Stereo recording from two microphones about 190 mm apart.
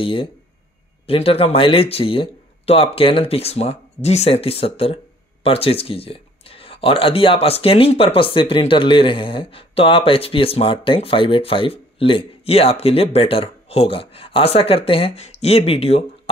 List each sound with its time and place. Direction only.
0.0 s speech: 30° left (ahead or behind)